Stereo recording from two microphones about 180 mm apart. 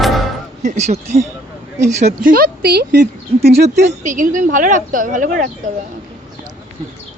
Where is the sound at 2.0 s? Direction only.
50° right (ahead or behind); by 3.8 s 65° right (ahead or behind).